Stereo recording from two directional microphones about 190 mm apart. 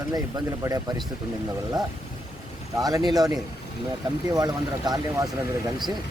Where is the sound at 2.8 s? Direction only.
20° right (ahead or behind).